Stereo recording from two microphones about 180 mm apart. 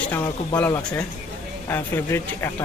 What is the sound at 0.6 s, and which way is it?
Speech, 15° left (ahead or behind).